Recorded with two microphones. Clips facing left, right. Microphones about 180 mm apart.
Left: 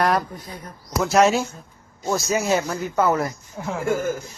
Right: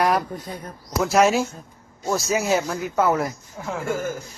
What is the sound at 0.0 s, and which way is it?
Speech, centre (ahead or behind).